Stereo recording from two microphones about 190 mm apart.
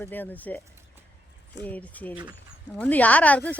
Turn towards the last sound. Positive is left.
turn(degrees=10)  # may be behind; listen again after turning